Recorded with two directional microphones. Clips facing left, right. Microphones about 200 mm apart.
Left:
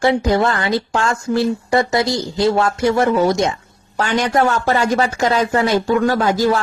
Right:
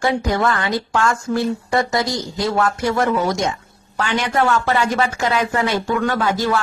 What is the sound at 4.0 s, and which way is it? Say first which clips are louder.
Speech: left 3 dB; 45° left (ahead or behind).